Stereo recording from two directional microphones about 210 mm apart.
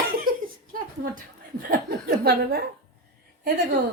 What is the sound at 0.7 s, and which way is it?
A woman's voice, 40° right (ahead or behind).